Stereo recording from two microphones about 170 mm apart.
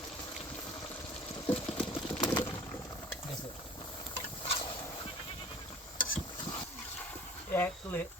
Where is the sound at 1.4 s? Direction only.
5° left (ahead or behind).